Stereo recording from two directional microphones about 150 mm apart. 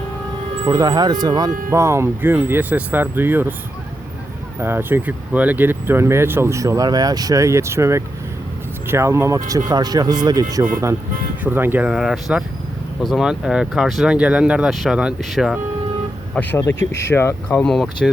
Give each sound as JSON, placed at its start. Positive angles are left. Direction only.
{"t": 0.7, "sound": "speech", "side_deg": -25}
{"t": 1.5, "sound": "speech", "side_deg": -65}
{"t": 1.7, "sound": "speech", "side_deg": -20}
{"t": 4.6, "sound": "speech", "side_deg": -15}
{"t": 11.9, "sound": "speech", "side_deg": 0}
{"t": 16.3, "sound": "speech", "side_deg": 10}
{"t": 17.7, "sound": "speech", "side_deg": 0}